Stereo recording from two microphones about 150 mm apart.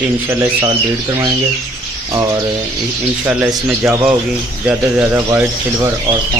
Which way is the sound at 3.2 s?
15° right (ahead or behind).